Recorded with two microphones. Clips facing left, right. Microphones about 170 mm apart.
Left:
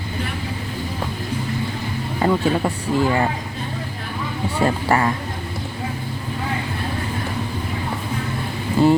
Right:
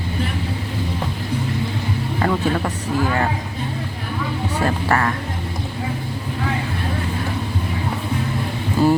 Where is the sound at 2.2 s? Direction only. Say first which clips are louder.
Left 2 dB; 15° left (ahead or behind).